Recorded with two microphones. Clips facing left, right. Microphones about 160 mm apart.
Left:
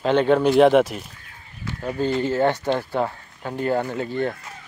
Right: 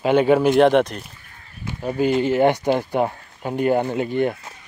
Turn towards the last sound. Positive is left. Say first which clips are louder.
# right 4 dB
turn(degrees=-15)  # may be behind; listen again after turning